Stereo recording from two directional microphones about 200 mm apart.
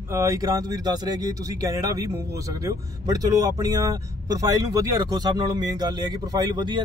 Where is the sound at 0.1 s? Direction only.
15° right (ahead or behind).